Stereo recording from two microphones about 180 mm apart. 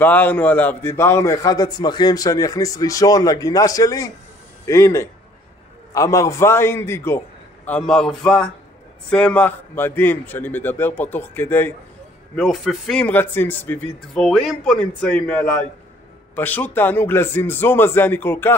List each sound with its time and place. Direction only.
0.0 s a man's voice: 10° left (ahead or behind)
12.4 s speech: centre (ahead or behind)